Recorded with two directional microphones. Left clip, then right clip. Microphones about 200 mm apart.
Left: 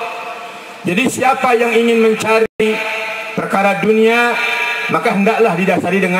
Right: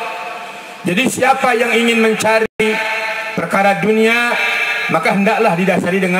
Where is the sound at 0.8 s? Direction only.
30° right (ahead or behind).